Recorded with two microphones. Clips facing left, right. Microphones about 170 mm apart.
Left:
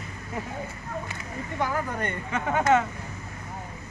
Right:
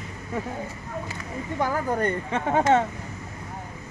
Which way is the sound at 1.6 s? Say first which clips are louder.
Right 4 dB; 35° right (ahead or behind).